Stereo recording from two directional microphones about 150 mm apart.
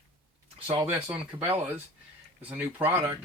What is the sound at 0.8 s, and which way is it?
Speech, 10° right (ahead or behind).